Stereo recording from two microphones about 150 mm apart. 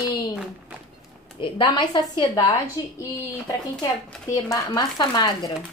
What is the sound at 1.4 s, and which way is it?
A woman's voice, 30° left (ahead or behind).